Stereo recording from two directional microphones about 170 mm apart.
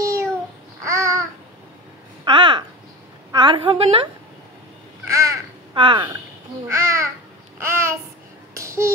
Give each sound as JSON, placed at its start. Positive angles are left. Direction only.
{"t": 0.0, "sound": "babbling", "side_deg": -20}
{"t": 2.2, "sound": "a sound", "side_deg": -30}
{"t": 3.3, "sound": "a woman's voice", "side_deg": -25}
{"t": 5.1, "sound": "crow", "side_deg": -20}
{"t": 5.8, "sound": "speech", "side_deg": -30}
{"t": 6.7, "sound": "babbling", "side_deg": -15}
{"t": 8.5, "sound": "a sound", "side_deg": -15}